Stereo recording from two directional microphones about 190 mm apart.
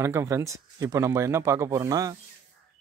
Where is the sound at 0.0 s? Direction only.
15° right (ahead or behind).